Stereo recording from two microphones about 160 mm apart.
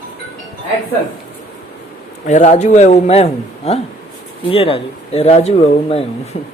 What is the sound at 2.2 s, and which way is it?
A man's voice, 50° left (ahead or behind).